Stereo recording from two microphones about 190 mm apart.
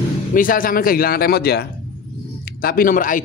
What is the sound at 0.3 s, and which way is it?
Speech, 45° left (ahead or behind).